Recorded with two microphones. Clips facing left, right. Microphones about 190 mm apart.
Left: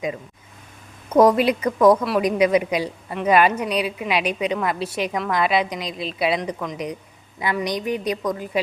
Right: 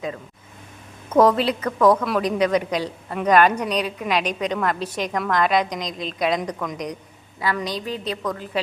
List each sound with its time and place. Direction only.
1.1 s a woman's voice: 15° left (ahead or behind)
7.3 s a woman's voice: 20° left (ahead or behind)